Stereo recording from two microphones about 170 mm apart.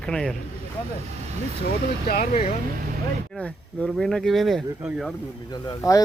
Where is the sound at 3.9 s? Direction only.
Centre (ahead or behind).